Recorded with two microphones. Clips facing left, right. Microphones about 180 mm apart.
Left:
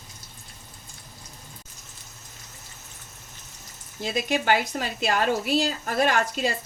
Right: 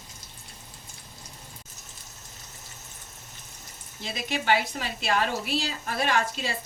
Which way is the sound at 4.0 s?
45° left (ahead or behind).